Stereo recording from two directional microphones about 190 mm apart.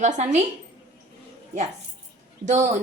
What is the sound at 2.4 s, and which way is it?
Speech, 40° right (ahead or behind).